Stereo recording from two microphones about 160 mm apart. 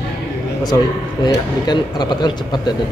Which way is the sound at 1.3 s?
25° left (ahead or behind).